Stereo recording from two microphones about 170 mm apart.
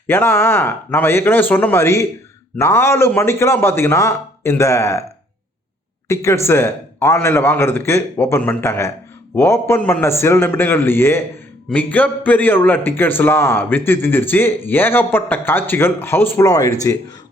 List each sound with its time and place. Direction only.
0.1 s a man's voice: 15° left (ahead or behind)
6.1 s a man's voice: 15° left (ahead or behind)